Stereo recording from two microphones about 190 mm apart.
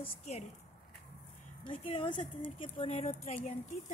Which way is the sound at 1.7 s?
30° left (ahead or behind).